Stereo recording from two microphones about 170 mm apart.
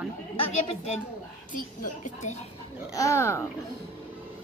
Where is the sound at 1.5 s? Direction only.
50° left (ahead or behind).